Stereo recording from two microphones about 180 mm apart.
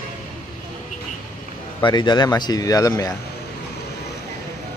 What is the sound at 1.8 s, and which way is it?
Speech, 25° left (ahead or behind).